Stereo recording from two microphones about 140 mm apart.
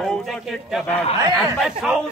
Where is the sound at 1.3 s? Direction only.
Centre (ahead or behind).